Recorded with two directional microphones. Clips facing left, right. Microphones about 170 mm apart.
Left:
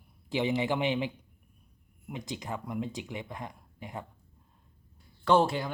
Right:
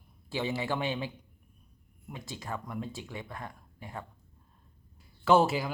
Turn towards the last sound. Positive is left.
turn(degrees=-5)  # may be behind; listen again after turning